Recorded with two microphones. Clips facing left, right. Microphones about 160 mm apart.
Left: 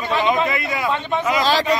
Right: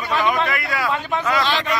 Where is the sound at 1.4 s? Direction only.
40° left (ahead or behind).